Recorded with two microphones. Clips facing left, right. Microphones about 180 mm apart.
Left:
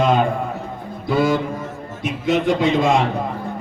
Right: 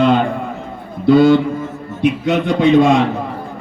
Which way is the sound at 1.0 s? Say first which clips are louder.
Right 9 dB; 70° right (ahead or behind).